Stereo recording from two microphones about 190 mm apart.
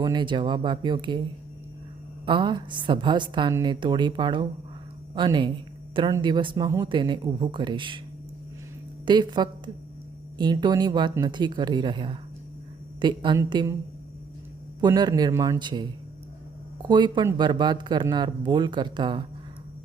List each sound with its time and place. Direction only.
0.0 s speech: 25° right (ahead or behind)
2.2 s speech: 25° right (ahead or behind)
9.0 s speech: 25° right (ahead or behind)
14.8 s speech: 20° right (ahead or behind)